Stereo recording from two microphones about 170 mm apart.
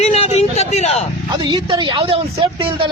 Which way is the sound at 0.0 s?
40° left (ahead or behind).